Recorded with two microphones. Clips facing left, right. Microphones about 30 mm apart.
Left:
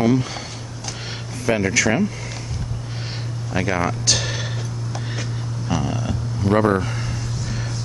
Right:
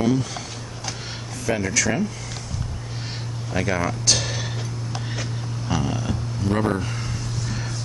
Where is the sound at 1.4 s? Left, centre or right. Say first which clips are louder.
Left 4 dB; centre.